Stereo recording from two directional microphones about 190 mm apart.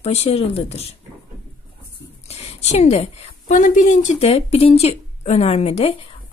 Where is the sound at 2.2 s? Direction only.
35° left (ahead or behind).